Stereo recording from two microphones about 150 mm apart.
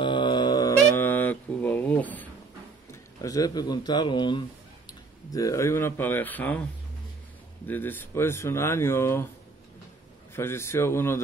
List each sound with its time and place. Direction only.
0.0 s mantra: 30° left (ahead or behind); by 2.2 s 10° left (ahead or behind)
2.9 s speech: 20° left (ahead or behind)
5.3 s speech: 20° left (ahead or behind)
7.6 s speech: 10° left (ahead or behind)
10.3 s speech: 15° left (ahead or behind)